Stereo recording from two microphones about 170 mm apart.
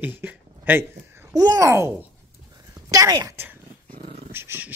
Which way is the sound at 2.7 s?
20° right (ahead or behind).